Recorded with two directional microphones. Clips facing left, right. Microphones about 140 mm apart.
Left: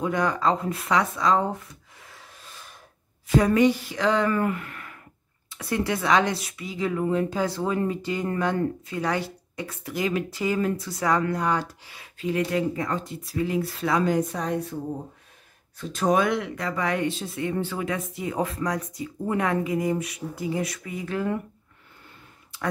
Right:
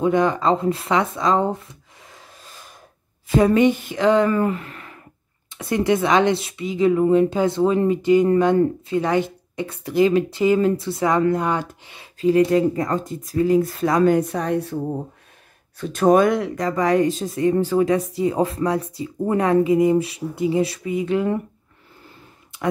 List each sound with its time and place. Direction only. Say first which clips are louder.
0.0 s speech: right 6 dB; 25° right (ahead or behind)
3.3 s speech: right 4 dB; 25° right (ahead or behind)
12.2 s speech: right 9 dB; 35° right (ahead or behind); by 14.7 s 70° right (ahead or behind)
15.8 s speech: right 7 dB; 60° right (ahead or behind); by 21.4 s 20° right (ahead or behind)